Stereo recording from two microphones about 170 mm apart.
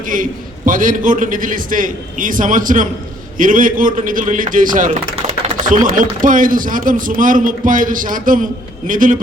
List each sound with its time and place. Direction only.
0.0 s a man's voice: 50° right (ahead or behind)